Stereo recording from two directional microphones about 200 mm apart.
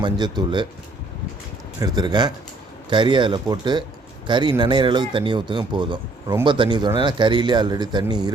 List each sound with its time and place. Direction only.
0.0 s speech: 20° right (ahead or behind)
1.8 s speech: 20° right (ahead or behind)